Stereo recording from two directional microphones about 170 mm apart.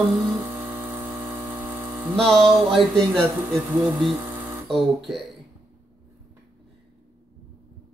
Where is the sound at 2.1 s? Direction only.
5° left (ahead or behind).